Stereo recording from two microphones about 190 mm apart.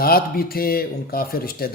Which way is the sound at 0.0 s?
50° left (ahead or behind).